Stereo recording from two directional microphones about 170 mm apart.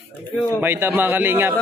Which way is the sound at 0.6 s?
15° right (ahead or behind).